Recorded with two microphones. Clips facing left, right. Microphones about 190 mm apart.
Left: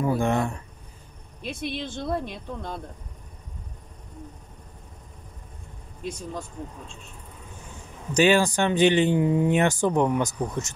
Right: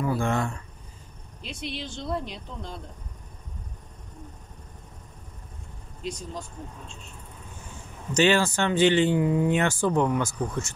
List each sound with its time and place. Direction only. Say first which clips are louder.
0.0 s speech: left 3 dB; 20° left (ahead or behind)
1.4 s speech: left 4 dB; 55° left (ahead or behind)
8.1 s speech: left 2 dB; 15° left (ahead or behind)